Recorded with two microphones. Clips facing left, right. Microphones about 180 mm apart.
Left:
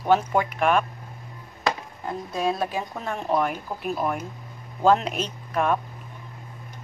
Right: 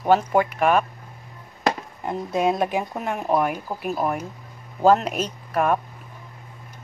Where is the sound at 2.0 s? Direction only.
20° right (ahead or behind).